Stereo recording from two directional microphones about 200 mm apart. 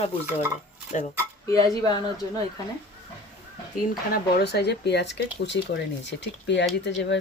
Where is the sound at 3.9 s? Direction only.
50° left (ahead or behind).